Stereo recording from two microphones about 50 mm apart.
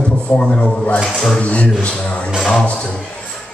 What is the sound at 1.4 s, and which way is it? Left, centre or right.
Speech, left.